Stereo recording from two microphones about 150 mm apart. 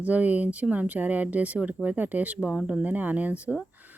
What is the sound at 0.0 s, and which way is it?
Speech, 10° right (ahead or behind).